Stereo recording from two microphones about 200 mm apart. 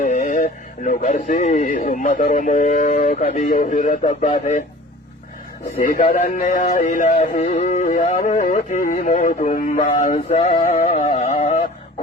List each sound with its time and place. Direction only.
0.0 s a sound: 40° left (ahead or behind)
1.5 s music: 40° left (ahead or behind)
5.8 s music: 45° left (ahead or behind)